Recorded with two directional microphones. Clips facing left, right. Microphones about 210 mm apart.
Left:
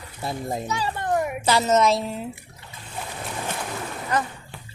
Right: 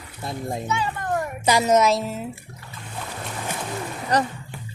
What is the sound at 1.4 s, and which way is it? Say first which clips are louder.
Speech: right 2 dB; 15° right (ahead or behind).